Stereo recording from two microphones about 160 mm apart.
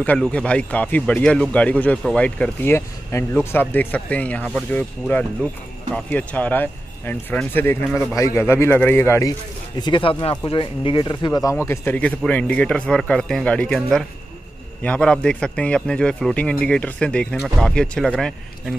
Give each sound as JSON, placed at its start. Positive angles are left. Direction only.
{"t": 0.0, "sound": "speech", "side_deg": 10}
{"t": 9.8, "sound": "speech", "side_deg": 30}
{"t": 11.6, "sound": "speech", "side_deg": 15}